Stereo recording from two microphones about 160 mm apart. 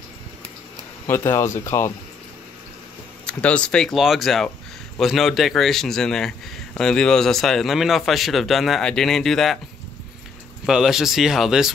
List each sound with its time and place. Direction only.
1.0 s speech: 15° left (ahead or behind)
3.3 s speech: 5° left (ahead or behind)
10.6 s speech: 5° right (ahead or behind)